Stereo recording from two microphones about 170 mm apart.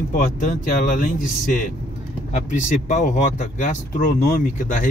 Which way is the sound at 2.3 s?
45° left (ahead or behind).